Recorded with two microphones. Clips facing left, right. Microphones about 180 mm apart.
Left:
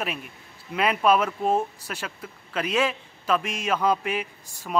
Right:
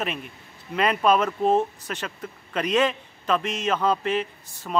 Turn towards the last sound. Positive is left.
turn(degrees=10)  # may be behind; listen again after turning